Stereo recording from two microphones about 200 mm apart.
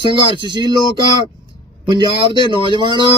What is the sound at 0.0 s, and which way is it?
Speech, 25° right (ahead or behind).